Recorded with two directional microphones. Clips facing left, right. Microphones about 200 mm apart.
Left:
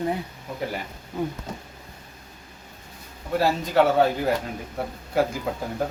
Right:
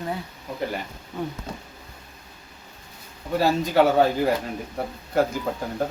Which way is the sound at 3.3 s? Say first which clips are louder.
Right 1 dB; centre (ahead or behind).